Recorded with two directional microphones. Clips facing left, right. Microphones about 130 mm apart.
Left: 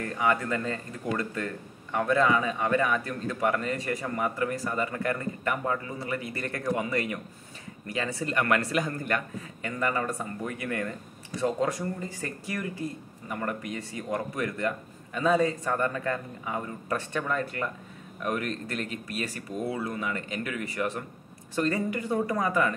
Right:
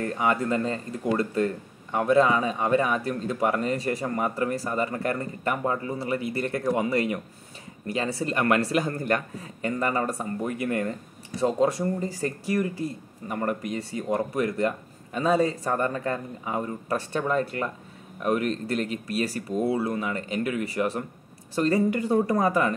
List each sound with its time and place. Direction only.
0.0 s speech: 30° right (ahead or behind)